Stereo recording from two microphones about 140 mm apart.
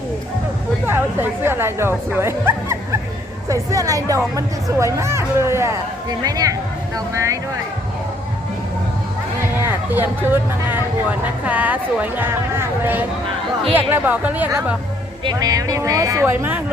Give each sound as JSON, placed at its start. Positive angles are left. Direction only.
{"t": 0.9, "sound": "speech", "side_deg": -15}
{"t": 9.6, "sound": "speech", "side_deg": -15}
{"t": 11.4, "sound": "speech", "side_deg": -10}
{"t": 15.2, "sound": "speech", "side_deg": -30}